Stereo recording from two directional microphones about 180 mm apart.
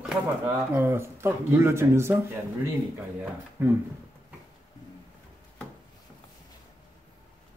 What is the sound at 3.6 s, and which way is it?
Speech, 10° right (ahead or behind).